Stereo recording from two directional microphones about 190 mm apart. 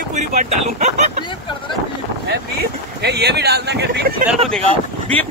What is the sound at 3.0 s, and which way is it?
Speech, 60° right (ahead or behind).